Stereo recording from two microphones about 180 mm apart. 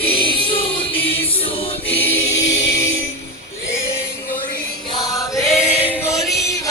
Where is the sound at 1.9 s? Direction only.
10° left (ahead or behind).